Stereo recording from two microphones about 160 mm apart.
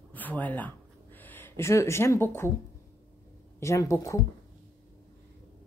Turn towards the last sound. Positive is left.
turn(degrees=20)  # may be behind; listen again after turning